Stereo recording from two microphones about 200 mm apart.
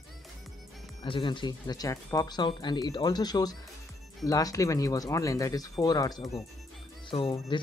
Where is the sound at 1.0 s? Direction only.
25° left (ahead or behind).